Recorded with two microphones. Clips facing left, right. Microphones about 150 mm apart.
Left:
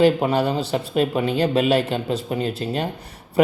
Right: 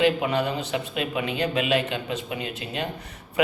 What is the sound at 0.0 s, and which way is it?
A man's voice, 35° left (ahead or behind).